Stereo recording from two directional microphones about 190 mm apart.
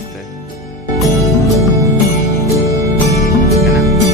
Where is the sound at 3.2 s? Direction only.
35° left (ahead or behind).